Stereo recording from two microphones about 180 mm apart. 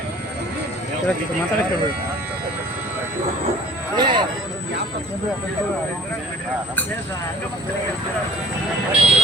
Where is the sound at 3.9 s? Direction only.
25° right (ahead or behind).